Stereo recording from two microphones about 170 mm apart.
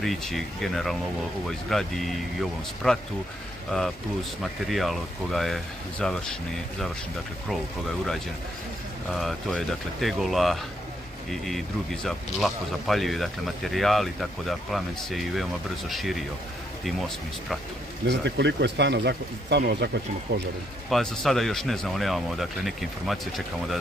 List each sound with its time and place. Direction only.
0.0 s speech: centre (ahead or behind)
4.4 s speech: centre (ahead or behind)
7.4 s speech: centre (ahead or behind)
18.0 s speech: 90° right
20.9 s speech: centre (ahead or behind)